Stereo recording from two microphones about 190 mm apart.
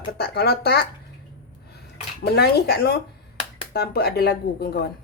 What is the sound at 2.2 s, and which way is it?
A woman's voice, 55° left (ahead or behind).